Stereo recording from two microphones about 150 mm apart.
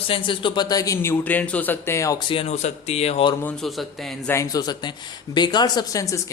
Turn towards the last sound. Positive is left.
turn(degrees=20)  # may be behind; listen again after turning